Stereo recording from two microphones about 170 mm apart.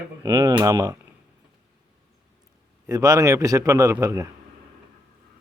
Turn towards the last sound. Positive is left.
turn(degrees=-20)  # may be behind; listen again after turning